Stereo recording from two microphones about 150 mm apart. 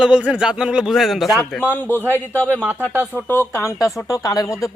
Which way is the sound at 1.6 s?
15° left (ahead or behind).